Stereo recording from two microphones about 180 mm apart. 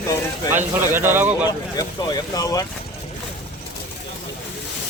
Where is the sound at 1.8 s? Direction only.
20° left (ahead or behind).